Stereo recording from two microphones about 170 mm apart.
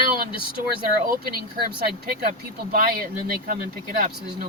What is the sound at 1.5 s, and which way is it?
Speech, 60° right (ahead or behind).